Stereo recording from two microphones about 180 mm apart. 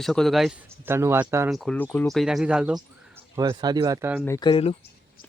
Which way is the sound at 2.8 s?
20° right (ahead or behind).